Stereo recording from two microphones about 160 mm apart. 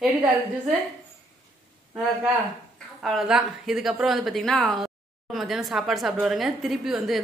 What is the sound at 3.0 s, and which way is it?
A woman's voice, centre (ahead or behind).